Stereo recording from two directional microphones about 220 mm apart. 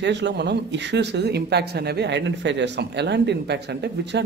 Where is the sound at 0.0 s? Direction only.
55° right (ahead or behind).